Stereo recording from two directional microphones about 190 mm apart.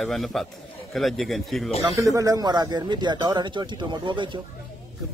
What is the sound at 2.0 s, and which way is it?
Speech, 20° right (ahead or behind).